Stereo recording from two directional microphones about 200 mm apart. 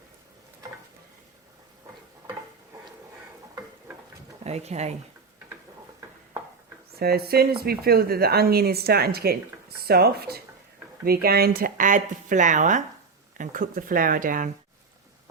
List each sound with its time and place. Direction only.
4.4 s speech: 35° right (ahead or behind)
6.9 s a woman's voice: 50° right (ahead or behind)